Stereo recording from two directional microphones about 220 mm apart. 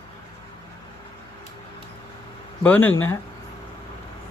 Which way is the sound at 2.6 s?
10° left (ahead or behind).